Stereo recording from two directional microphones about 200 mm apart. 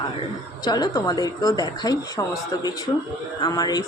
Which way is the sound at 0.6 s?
20° left (ahead or behind).